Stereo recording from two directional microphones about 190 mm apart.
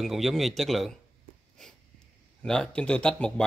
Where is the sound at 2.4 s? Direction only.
5° left (ahead or behind).